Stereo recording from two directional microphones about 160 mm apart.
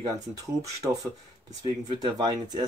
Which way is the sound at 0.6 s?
20° right (ahead or behind).